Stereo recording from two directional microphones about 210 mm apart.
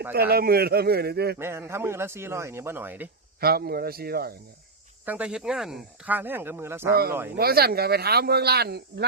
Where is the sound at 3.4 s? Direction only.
45° right (ahead or behind).